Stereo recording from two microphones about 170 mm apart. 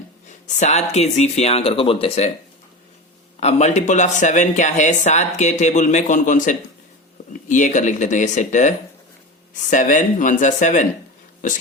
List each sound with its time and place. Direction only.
0.4 s speech: 45° left (ahead or behind)
3.4 s speech: 45° left (ahead or behind)